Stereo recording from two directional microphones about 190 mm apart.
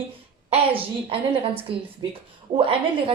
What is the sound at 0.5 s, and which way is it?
A woman's voice, 30° right (ahead or behind).